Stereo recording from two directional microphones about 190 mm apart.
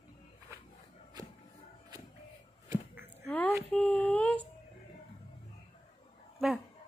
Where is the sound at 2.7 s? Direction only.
10° right (ahead or behind).